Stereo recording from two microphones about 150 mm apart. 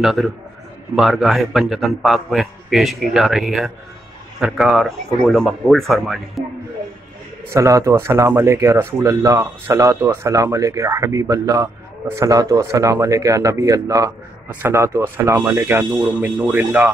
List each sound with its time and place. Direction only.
0.0 s a man's voice: centre (ahead or behind)
7.5 s speech: 20° right (ahead or behind)